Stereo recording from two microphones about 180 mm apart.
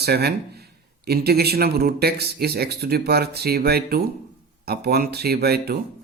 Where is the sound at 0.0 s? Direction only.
60° right (ahead or behind).